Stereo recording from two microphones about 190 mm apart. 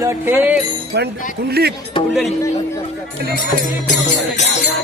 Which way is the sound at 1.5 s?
55° right (ahead or behind).